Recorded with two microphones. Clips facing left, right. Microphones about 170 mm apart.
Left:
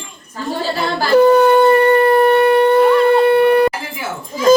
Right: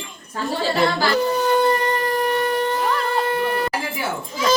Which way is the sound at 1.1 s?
65° left (ahead or behind).